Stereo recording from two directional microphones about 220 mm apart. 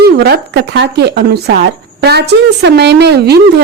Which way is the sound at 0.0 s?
50° right (ahead or behind).